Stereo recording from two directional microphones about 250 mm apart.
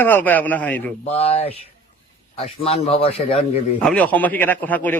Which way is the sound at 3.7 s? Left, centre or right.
Centre.